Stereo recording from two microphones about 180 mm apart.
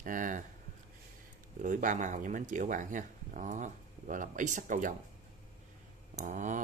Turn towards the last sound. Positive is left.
turn(degrees=-45)  # may be behind; listen again after turning